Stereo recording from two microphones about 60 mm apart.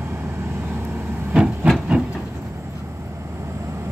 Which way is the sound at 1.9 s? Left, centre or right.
Right.